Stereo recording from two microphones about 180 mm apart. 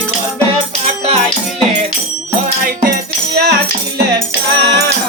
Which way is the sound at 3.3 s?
60° right (ahead or behind).